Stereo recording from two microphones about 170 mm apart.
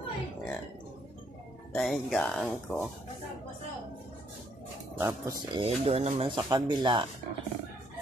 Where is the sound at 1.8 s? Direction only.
Centre (ahead or behind).